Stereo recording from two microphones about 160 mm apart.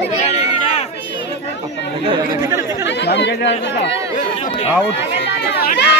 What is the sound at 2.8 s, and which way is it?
Speech, 90° left.